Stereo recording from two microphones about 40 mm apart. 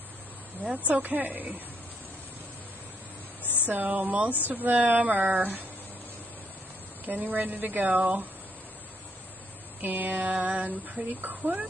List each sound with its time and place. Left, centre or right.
0.7 s speech: right
3.6 s speech: right
7.1 s speech: right
9.8 s speech: right